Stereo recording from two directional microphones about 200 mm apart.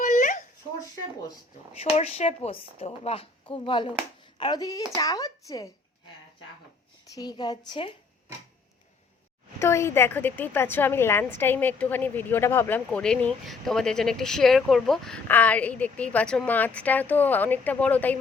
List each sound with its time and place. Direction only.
0.0 s a sound: 40° left (ahead or behind)
1.8 s a woman's voice: 30° left (ahead or behind)
7.1 s a woman's voice: 20° left (ahead or behind)
9.6 s a woman's voice: 15° left (ahead or behind)